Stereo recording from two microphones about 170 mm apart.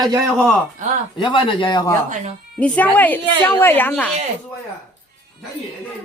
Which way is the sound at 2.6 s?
10° left (ahead or behind).